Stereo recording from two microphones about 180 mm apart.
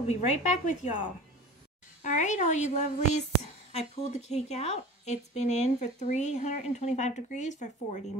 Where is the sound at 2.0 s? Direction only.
45° left (ahead or behind).